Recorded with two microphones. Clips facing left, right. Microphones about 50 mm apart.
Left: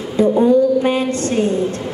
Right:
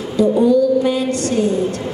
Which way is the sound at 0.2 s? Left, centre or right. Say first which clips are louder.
Left 1 dB; left.